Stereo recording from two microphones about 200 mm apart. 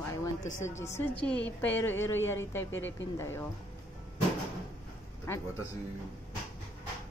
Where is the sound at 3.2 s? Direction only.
10° left (ahead or behind).